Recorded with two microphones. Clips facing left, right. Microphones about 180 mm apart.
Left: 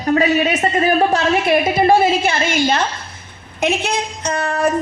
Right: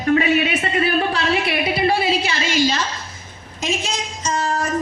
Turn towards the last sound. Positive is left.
turn(degrees=60)  # may be behind; listen again after turning